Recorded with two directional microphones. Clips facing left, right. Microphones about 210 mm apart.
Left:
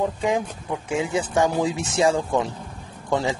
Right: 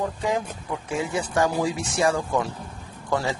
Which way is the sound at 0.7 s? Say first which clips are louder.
Left 3 dB; 20° left (ahead or behind).